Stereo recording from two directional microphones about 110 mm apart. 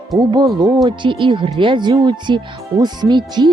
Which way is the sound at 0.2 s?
40° right (ahead or behind).